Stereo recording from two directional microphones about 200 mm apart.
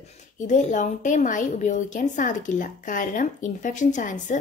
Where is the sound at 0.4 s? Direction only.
40° left (ahead or behind).